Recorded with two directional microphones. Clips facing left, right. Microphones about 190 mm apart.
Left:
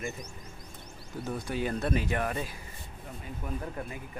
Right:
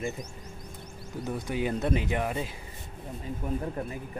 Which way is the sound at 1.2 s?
15° right (ahead or behind).